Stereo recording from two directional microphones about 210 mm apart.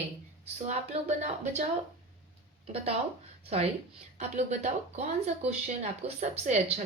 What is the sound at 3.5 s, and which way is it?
Speech, 30° right (ahead or behind).